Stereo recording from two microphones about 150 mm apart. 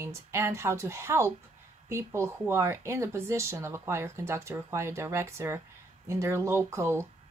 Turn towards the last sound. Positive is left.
turn(degrees=-20)  # may be behind; listen again after turning